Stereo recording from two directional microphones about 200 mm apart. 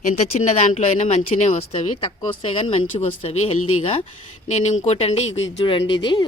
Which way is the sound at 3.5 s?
90° left.